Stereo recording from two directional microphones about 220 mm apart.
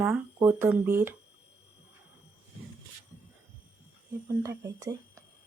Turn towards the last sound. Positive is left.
turn(degrees=-15)  # may be behind; listen again after turning